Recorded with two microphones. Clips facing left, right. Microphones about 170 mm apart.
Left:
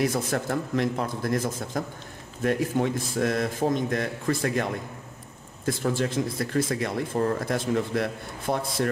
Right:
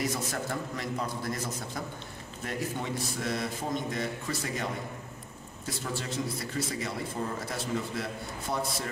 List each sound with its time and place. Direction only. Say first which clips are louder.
0.0 s a man's voice: left 7 dB; 55° left (ahead or behind)
5.7 s speech: left 10 dB; 50° left (ahead or behind)